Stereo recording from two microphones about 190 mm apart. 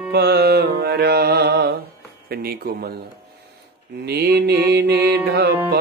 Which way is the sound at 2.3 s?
55° right (ahead or behind).